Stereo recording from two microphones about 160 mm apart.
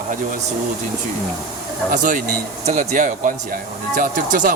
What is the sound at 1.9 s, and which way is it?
Speech, 55° right (ahead or behind).